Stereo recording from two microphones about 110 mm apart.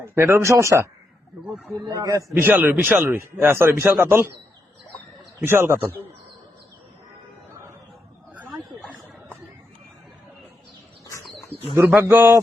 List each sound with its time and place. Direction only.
0.0 s a man's voice: 20° right (ahead or behind)
1.5 s a man's voice: centre (ahead or behind)
1.9 s a man's voice: 30° right (ahead or behind)
2.4 s a man's voice: 15° right (ahead or behind)
5.4 s a man's voice: 20° right (ahead or behind)
8.4 s wild animals: centre (ahead or behind)
11.0 s bird: 30° left (ahead or behind)
12.0 s a man's voice: 20° right (ahead or behind)